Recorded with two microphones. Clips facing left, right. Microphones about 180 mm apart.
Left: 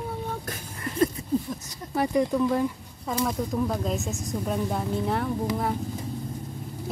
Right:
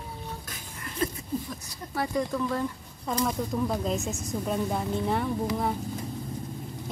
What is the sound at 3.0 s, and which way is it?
Speech, centre (ahead or behind).